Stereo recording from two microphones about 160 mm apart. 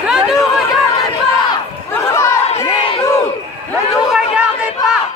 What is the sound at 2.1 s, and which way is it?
Crowd, 15° left (ahead or behind).